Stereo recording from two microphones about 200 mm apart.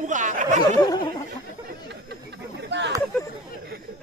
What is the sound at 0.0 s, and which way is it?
Chatter, 40° right (ahead or behind).